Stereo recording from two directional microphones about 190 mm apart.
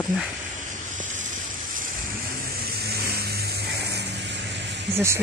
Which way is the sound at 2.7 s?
55° right (ahead or behind).